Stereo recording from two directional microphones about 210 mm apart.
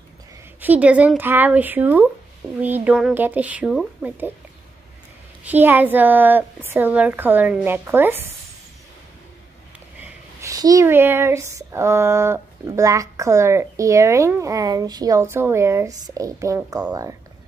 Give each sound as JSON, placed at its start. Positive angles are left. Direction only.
{"t": 0.6, "sound": "speech", "side_deg": -5}
{"t": 5.4, "sound": "speech", "side_deg": -10}
{"t": 9.9, "sound": "speech", "side_deg": -15}